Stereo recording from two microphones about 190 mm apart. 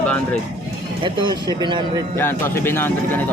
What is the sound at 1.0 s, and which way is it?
Speech, 25° right (ahead or behind).